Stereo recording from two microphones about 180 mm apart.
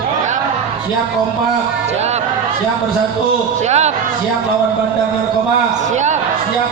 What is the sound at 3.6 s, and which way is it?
Speech, 40° right (ahead or behind).